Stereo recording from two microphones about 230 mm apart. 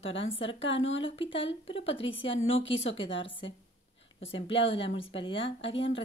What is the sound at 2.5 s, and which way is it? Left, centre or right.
Speech, left.